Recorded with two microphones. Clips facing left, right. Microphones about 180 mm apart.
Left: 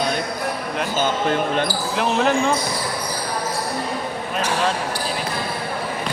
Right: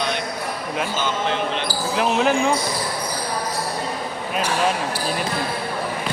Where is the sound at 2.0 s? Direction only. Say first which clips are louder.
Even; 5° right (ahead or behind).